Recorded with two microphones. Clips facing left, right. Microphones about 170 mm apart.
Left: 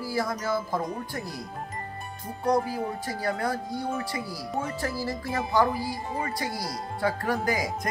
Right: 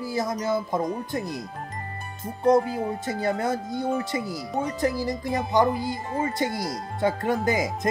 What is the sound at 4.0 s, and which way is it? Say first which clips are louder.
Speech: right 4 dB; 20° right (ahead or behind).